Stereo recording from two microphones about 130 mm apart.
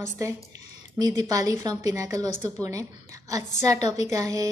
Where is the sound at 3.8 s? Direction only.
60° left (ahead or behind).